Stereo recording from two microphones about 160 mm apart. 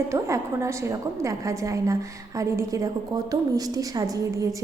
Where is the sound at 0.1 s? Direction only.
15° right (ahead or behind).